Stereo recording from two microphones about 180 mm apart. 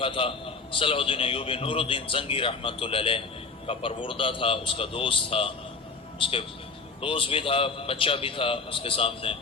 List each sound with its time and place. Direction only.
0.0 s a man's voice: 30° left (ahead or behind)